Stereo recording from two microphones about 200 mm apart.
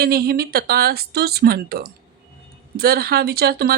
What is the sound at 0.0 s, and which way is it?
Speech, 50° right (ahead or behind).